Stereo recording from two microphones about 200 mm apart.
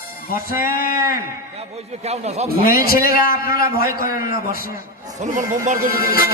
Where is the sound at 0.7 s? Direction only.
45° left (ahead or behind).